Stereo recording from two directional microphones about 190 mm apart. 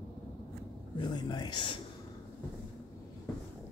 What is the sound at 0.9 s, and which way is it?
Speech, 25° left (ahead or behind).